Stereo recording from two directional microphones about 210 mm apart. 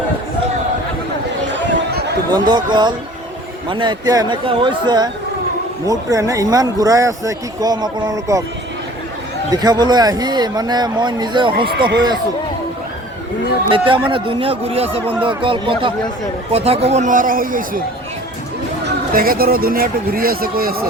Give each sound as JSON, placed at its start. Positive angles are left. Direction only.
{"t": 1.5, "sound": "chatter", "side_deg": -50}
{"t": 2.5, "sound": "speech", "side_deg": -20}
{"t": 9.5, "sound": "speech", "side_deg": -20}
{"t": 13.7, "sound": "a man's voice", "side_deg": -25}
{"t": 18.9, "sound": "speech", "side_deg": -45}